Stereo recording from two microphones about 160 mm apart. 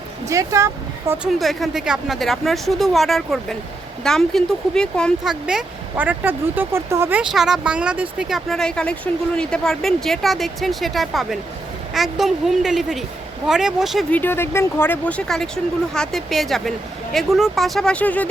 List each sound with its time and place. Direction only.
0.3 s speech: 20° right (ahead or behind)
1.2 s speech: centre (ahead or behind)
14.1 s speech: 10° left (ahead or behind)